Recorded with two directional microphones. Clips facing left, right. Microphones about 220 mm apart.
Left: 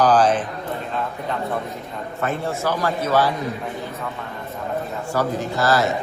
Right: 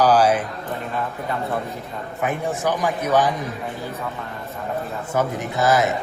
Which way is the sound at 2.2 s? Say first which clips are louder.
Right 1 dB; 15° right (ahead or behind).